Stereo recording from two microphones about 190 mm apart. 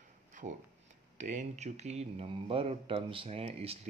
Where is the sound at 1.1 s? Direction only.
40° right (ahead or behind).